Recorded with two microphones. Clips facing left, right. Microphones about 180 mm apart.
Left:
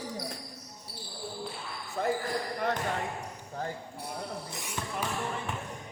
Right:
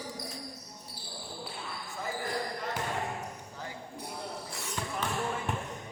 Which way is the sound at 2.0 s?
65° left (ahead or behind).